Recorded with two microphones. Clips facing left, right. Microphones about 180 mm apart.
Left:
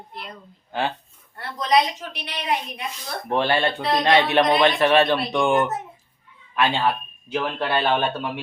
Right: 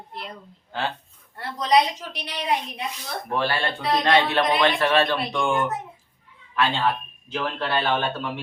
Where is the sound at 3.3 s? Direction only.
20° left (ahead or behind).